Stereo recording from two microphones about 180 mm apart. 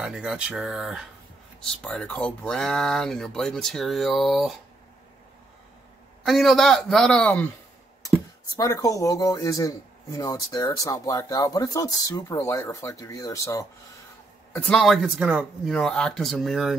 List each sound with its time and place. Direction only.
0.0 s speech: 5° right (ahead or behind)
6.2 s speech: centre (ahead or behind)
8.5 s speech: 20° left (ahead or behind)
14.5 s speech: centre (ahead or behind)